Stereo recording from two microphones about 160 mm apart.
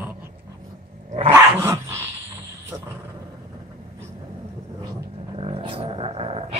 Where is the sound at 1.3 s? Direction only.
15° right (ahead or behind).